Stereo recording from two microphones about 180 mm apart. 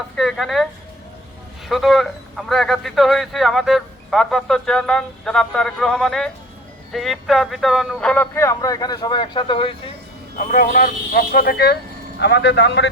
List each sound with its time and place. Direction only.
0.2 s speech: centre (ahead or behind); by 9.9 s 30° left (ahead or behind)
10.3 s a man's voice: 45° left (ahead or behind); by 12.9 s 75° left (ahead or behind)